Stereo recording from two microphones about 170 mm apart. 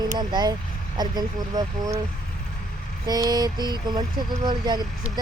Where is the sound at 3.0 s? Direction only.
20° right (ahead or behind).